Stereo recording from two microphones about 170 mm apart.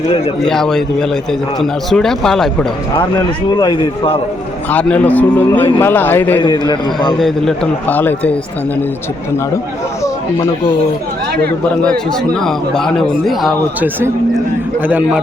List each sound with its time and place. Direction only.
0.4 s a man's voice: 5° left (ahead or behind)
2.9 s speech: 25° left (ahead or behind)
4.7 s a man's voice: 10° left (ahead or behind)
6.4 s speech: 25° left (ahead or behind)
7.2 s a man's voice: centre (ahead or behind)
12.4 s a man's voice: 5° left (ahead or behind)